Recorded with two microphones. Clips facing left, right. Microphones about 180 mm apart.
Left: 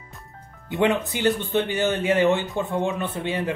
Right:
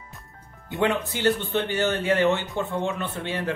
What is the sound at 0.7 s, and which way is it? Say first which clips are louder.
Speech: left 3 dB; 20° left (ahead or behind).